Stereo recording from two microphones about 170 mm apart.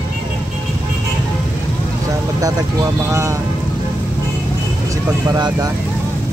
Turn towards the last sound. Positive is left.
turn(degrees=-25)  # may be behind; listen again after turning